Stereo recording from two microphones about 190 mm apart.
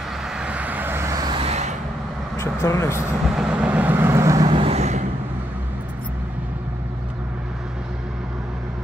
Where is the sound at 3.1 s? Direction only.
5° right (ahead or behind); by 5.0 s 35° right (ahead or behind).